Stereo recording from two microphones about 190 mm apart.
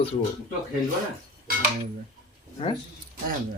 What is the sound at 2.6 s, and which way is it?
Speech, 30° left (ahead or behind).